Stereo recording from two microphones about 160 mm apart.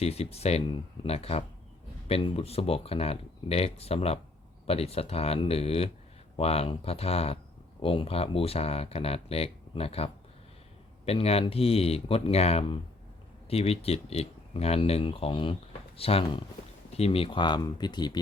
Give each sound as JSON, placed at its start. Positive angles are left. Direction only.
{"t": 0.0, "sound": "speech", "side_deg": 40}